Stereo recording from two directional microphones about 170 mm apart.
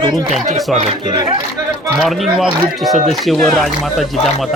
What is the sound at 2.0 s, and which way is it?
Speech, centre (ahead or behind).